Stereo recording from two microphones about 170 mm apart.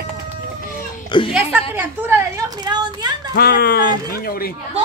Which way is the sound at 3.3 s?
70° left (ahead or behind).